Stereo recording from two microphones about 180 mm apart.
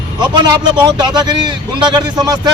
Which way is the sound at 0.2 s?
25° right (ahead or behind).